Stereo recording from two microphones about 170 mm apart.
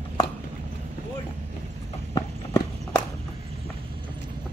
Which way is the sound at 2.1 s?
20° left (ahead or behind).